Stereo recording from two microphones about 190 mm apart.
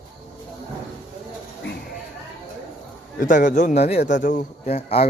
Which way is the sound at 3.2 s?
45° left (ahead or behind).